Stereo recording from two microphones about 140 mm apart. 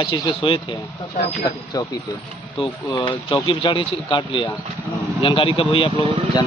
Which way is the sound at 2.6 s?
35° left (ahead or behind).